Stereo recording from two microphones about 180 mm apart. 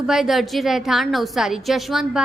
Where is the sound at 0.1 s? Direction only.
Centre (ahead or behind).